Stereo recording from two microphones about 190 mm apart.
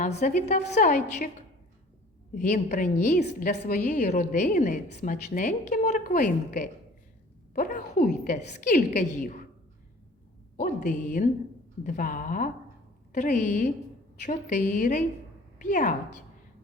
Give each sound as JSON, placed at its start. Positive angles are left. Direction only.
{"t": 0.0, "sound": "a woman's voice", "side_deg": 40}
{"t": 2.3, "sound": "a woman's voice", "side_deg": 40}
{"t": 10.6, "sound": "a woman's voice", "side_deg": 40}